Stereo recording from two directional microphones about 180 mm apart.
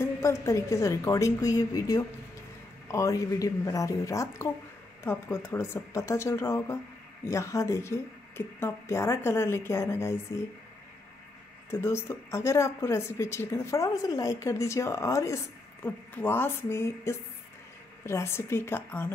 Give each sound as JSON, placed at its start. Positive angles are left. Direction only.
{"t": 0.0, "sound": "speech", "side_deg": 15}
{"t": 11.7, "sound": "speech", "side_deg": 15}